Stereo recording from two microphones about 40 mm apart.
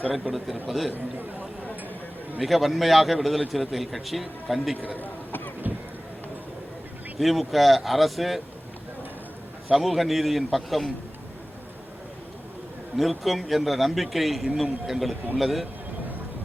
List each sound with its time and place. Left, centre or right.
0.1 s a man's voice: centre
2.4 s a man's voice: centre
5.7 s a sound: right
7.2 s a man's voice: centre
9.7 s a man's voice: centre
13.0 s a man's voice: centre